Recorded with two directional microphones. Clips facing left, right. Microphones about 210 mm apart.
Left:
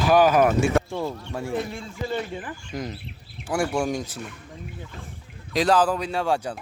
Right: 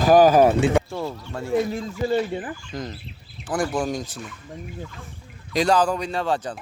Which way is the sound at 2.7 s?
10° left (ahead or behind).